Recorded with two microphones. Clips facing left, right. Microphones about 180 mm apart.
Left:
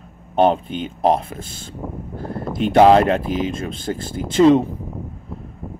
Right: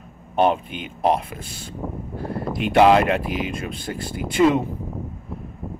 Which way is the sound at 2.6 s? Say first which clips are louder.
Left 3 dB; 35° left (ahead or behind).